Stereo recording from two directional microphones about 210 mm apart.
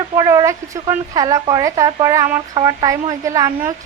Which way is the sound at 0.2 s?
15° right (ahead or behind).